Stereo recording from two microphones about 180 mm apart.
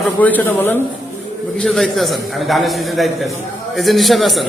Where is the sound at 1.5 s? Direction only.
Centre (ahead or behind).